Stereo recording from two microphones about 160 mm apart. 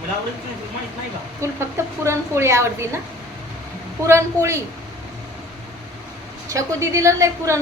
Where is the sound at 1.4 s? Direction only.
15° right (ahead or behind).